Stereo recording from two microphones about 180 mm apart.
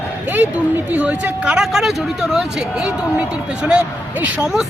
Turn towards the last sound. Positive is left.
turn(degrees=-5)  # may be behind; listen again after turning